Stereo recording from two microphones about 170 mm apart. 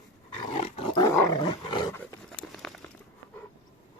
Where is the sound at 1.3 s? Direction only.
30° left (ahead or behind).